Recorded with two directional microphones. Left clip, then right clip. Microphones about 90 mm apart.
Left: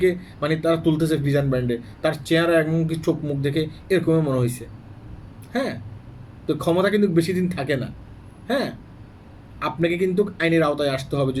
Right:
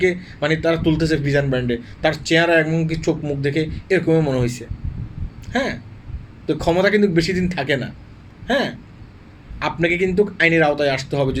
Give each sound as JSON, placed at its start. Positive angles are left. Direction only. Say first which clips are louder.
{"t": 0.0, "sound": "speech", "louder": "right 2 dB", "side_deg": 25}